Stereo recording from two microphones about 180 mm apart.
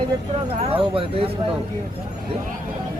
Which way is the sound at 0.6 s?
30° right (ahead or behind).